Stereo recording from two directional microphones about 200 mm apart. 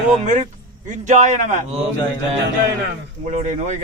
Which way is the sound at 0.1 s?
35° right (ahead or behind).